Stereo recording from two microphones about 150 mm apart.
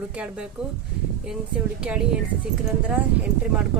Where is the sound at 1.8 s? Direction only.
5° right (ahead or behind).